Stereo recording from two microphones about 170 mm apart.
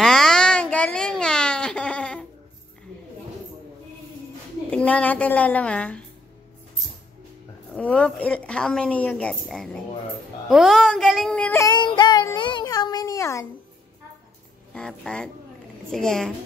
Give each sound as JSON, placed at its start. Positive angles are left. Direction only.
{"t": 0.0, "sound": "a sound", "side_deg": 0}
{"t": 4.6, "sound": "a woman's voice", "side_deg": 10}
{"t": 7.7, "sound": "a woman's voice", "side_deg": 10}
{"t": 11.6, "sound": "speech", "side_deg": 25}
{"t": 14.7, "sound": "speech", "side_deg": 5}